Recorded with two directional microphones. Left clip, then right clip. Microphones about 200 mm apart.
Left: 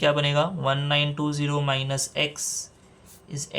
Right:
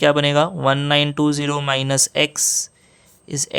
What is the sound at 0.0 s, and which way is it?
Speech, 55° right (ahead or behind).